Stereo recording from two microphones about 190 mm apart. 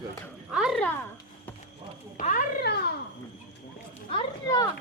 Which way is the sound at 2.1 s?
45° left (ahead or behind).